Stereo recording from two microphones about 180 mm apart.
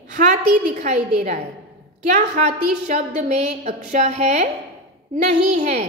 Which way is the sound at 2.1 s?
40° right (ahead or behind).